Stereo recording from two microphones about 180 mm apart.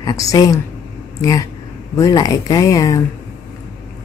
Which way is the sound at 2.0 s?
20° left (ahead or behind).